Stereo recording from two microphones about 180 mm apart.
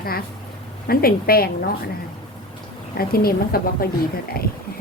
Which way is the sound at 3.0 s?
55° left (ahead or behind).